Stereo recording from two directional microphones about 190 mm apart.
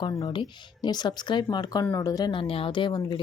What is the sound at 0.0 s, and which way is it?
Speech, 20° left (ahead or behind).